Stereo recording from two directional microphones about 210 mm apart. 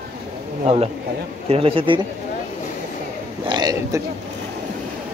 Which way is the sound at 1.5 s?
25° right (ahead or behind).